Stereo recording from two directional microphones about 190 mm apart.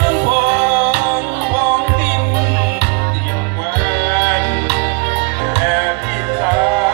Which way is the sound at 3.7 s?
55° right (ahead or behind).